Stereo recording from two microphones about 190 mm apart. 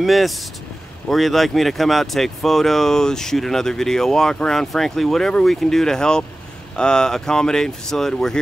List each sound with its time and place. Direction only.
0.0 s speech: centre (ahead or behind)